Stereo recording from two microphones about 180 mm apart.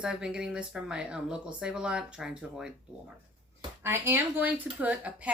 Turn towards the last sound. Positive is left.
turn(degrees=-10)  # may be behind; listen again after turning